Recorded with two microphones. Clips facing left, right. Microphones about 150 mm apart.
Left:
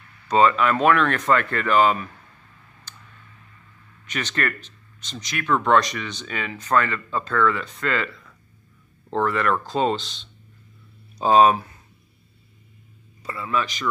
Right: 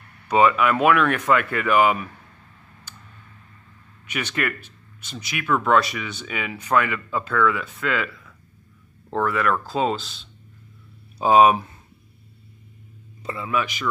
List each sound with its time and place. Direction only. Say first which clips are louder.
0.3 s speech: even; 10° right (ahead or behind)
2.9 s a sound: right 1 dB; 10° right (ahead or behind)
4.1 s speech: even; 10° right (ahead or behind)
13.2 s a man's voice: right 2 dB; 20° right (ahead or behind)
13.5 s speech: even; 10° right (ahead or behind)